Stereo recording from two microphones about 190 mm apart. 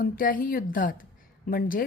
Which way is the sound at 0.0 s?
45° left (ahead or behind).